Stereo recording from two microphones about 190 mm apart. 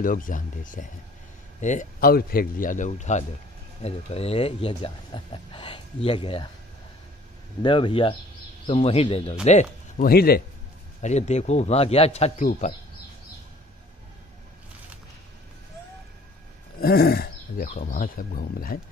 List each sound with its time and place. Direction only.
0.0 s a man's voice: 45° left (ahead or behind); by 6.5 s 25° left (ahead or behind)
7.6 s speech: 25° left (ahead or behind); by 10.4 s 55° left (ahead or behind)
11.0 s speech: 35° left (ahead or behind)
16.8 s a man's voice: 55° left (ahead or behind)